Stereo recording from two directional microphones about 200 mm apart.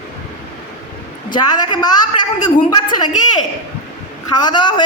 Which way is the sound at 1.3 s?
20° left (ahead or behind).